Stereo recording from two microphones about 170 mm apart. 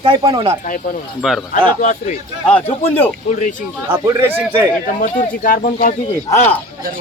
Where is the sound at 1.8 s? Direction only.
45° left (ahead or behind).